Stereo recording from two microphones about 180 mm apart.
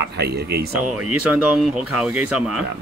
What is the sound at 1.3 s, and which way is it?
Speech, 5° right (ahead or behind).